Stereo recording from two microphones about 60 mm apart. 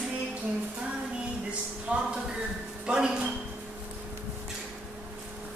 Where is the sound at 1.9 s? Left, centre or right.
Centre.